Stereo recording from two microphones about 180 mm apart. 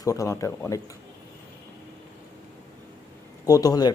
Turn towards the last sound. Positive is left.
turn(degrees=20)  # may be behind; listen again after turning